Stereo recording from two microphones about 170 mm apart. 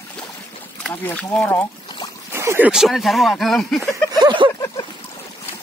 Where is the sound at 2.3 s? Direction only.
15° right (ahead or behind); by 4.1 s centre (ahead or behind).